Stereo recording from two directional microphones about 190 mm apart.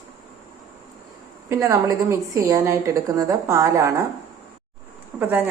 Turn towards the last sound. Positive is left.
turn(degrees=-10)  # may be behind; listen again after turning